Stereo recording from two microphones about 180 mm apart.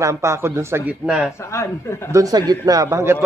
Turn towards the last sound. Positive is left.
turn(degrees=-15)  # may be behind; listen again after turning